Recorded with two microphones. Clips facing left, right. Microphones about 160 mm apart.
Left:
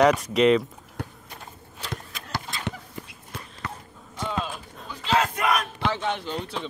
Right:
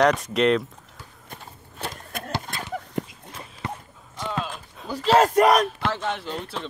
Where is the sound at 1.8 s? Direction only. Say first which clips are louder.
Right 4 dB; 60° right (ahead or behind).